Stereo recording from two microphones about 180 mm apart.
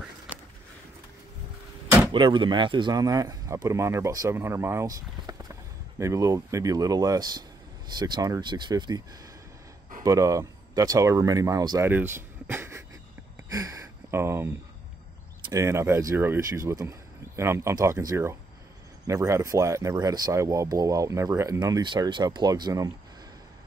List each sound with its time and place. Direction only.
2.1 s speech: 25° right (ahead or behind)
10.0 s speech: 20° right (ahead or behind)
13.5 s a sound: 20° right (ahead or behind)
15.5 s speech: 15° right (ahead or behind)